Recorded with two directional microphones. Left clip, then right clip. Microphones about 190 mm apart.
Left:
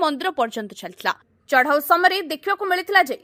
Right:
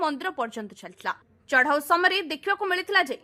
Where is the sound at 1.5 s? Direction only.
20° left (ahead or behind).